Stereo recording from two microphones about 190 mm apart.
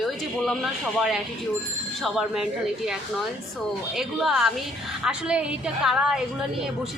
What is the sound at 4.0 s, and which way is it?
A woman's voice, centre (ahead or behind).